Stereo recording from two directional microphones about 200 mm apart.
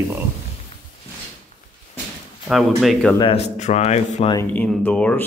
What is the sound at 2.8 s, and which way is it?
Speech, centre (ahead or behind).